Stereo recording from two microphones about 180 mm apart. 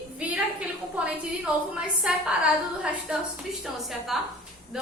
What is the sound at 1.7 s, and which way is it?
Speech, 5° right (ahead or behind).